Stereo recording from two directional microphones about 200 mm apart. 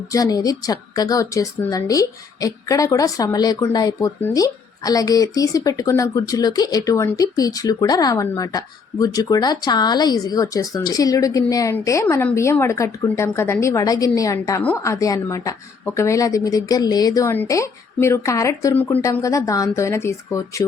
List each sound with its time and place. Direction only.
0.1 s a woman's voice: 20° left (ahead or behind)